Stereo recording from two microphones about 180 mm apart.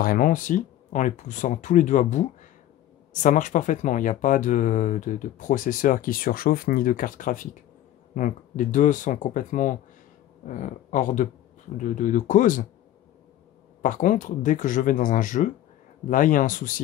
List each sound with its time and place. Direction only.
0.0 s speech: 50° left (ahead or behind)
13.8 s speech: 45° left (ahead or behind)